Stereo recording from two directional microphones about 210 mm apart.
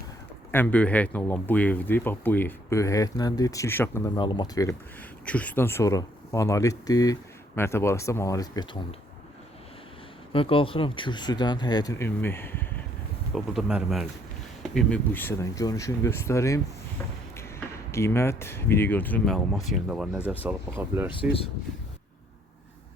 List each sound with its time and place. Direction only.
0.5 s speech: 10° left (ahead or behind)
5.2 s speech: 5° left (ahead or behind)
10.3 s speech: 25° left (ahead or behind); by 12.6 s 10° left (ahead or behind)
13.3 s speech: centre (ahead or behind)
17.9 s speech: 10° left (ahead or behind); by 21.1 s 10° right (ahead or behind)
21.1 s speech: 25° left (ahead or behind)